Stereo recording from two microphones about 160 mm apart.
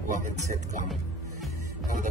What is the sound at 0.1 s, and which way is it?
Speech, 50° right (ahead or behind).